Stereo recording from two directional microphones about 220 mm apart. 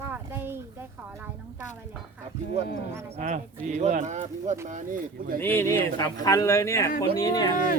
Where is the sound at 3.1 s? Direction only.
35° right (ahead or behind).